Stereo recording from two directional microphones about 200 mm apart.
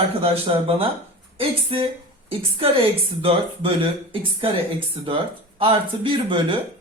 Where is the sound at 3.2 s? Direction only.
25° right (ahead or behind).